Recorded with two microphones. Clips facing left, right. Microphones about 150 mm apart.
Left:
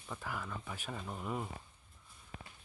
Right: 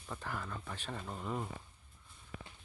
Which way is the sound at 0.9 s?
Centre (ahead or behind).